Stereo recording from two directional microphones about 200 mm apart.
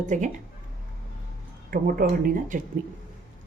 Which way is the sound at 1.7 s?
45° right (ahead or behind).